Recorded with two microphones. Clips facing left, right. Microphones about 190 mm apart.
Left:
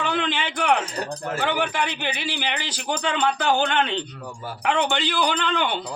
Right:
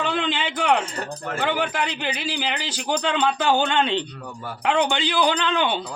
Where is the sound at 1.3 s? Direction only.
Centre (ahead or behind).